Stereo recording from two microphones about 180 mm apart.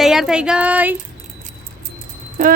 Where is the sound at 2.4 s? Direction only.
45° right (ahead or behind).